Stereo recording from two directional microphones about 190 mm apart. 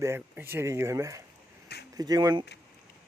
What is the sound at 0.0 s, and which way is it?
Speech, 10° right (ahead or behind).